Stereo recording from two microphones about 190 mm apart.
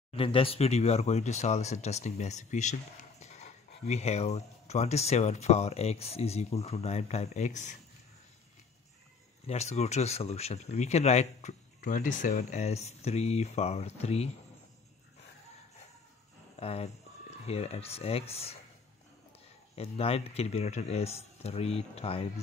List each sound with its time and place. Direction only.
0.1 s speech: 30° left (ahead or behind)
9.5 s speech: 35° left (ahead or behind)
16.5 s speech: 35° left (ahead or behind)
19.7 s speech: 30° left (ahead or behind)